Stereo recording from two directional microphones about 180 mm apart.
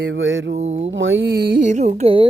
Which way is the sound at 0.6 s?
40° right (ahead or behind).